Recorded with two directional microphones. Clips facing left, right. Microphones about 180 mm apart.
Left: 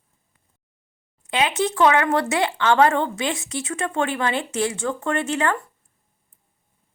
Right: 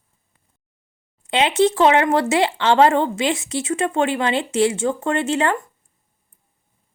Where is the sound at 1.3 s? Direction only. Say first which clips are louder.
Right 5 dB; 30° right (ahead or behind).